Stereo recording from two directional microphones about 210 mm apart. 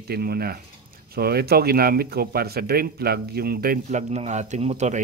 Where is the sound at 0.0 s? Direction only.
50° right (ahead or behind).